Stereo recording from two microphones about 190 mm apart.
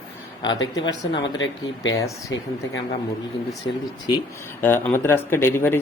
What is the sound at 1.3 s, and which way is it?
Speech, 75° left (ahead or behind).